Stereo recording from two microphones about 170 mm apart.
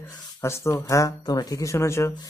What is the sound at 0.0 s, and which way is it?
Speech, 15° left (ahead or behind).